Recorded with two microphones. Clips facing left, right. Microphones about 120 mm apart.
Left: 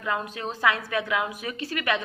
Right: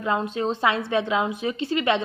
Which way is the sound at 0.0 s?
25° right (ahead or behind).